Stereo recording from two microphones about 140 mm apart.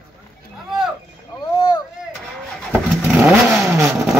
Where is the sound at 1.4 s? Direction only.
30° left (ahead or behind).